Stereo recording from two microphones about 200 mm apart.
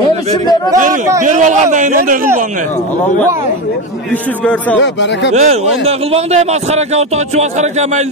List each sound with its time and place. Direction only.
1.2 s a man's voice: 35° right (ahead or behind)
5.3 s a man's voice: 30° right (ahead or behind)